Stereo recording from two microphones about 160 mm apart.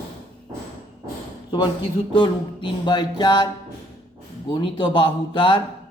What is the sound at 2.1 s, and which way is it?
Music, 30° left (ahead or behind).